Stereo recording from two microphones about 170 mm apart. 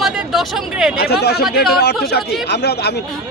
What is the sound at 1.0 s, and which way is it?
Speech, 65° left (ahead or behind).